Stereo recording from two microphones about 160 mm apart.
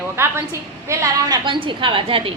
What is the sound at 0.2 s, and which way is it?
A woman's voice, 15° right (ahead or behind).